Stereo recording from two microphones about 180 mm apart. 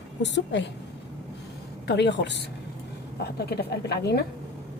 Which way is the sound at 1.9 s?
70° left (ahead or behind).